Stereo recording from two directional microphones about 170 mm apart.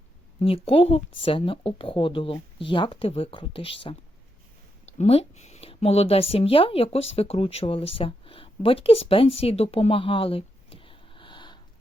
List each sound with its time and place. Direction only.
0.4 s a woman's voice: 35° left (ahead or behind)